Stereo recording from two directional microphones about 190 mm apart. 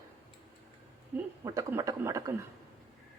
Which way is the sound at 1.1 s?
10° right (ahead or behind).